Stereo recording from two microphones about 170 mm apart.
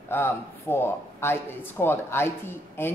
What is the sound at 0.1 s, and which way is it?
A man's voice, 15° left (ahead or behind).